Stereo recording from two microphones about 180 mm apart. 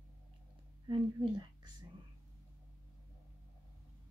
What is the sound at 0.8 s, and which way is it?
Speech, 30° right (ahead or behind).